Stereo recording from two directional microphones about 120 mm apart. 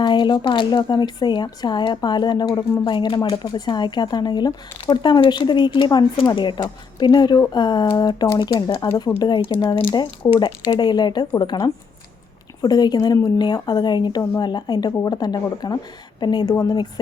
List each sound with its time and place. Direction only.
0.0 s speech: 40° left (ahead or behind)